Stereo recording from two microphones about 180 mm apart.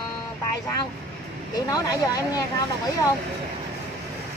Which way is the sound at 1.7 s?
20° left (ahead or behind).